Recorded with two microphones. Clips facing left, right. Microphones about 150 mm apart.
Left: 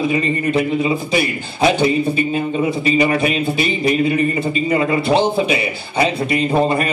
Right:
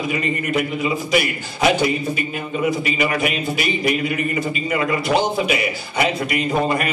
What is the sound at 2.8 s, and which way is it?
Speech, 30° left (ahead or behind).